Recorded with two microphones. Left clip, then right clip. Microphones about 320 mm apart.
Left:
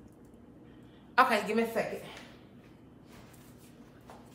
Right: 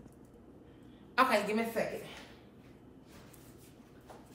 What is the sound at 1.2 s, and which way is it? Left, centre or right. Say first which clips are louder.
Speech: left 3 dB; centre.